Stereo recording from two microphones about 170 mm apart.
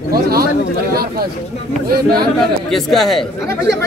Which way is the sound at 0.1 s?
65° right (ahead or behind).